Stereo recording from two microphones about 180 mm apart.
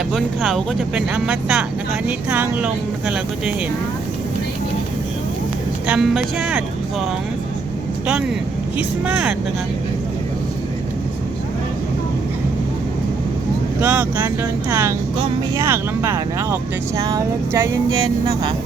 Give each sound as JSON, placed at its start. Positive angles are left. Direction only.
{"t": 0.1, "sound": "speech", "side_deg": 0}
{"t": 5.9, "sound": "speech", "side_deg": -5}
{"t": 9.0, "sound": "speech", "side_deg": -5}
{"t": 13.8, "sound": "speech", "side_deg": -10}